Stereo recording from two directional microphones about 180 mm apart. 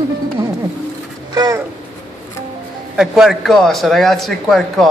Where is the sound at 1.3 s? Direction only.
20° right (ahead or behind).